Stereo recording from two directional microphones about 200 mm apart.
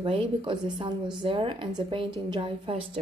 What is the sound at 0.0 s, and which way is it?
A woman's voice, 30° right (ahead or behind).